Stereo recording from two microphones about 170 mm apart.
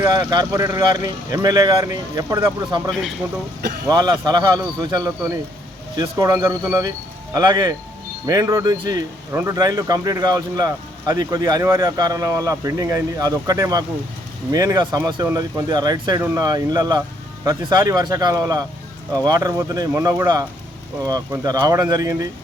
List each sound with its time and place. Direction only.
0.0 s speech: 20° right (ahead or behind)
2.9 s a man's voice: centre (ahead or behind)
3.8 s speech: 25° right (ahead or behind)